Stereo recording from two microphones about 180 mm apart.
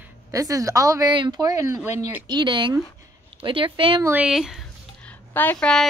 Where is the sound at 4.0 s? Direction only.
10° right (ahead or behind).